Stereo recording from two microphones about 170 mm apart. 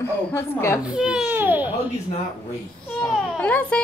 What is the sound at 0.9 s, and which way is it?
Speech, 5° right (ahead or behind).